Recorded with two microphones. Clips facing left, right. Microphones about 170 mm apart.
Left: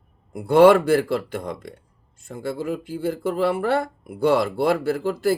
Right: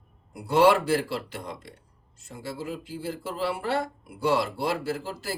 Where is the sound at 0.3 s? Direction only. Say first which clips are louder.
Left 7 dB; 55° left (ahead or behind).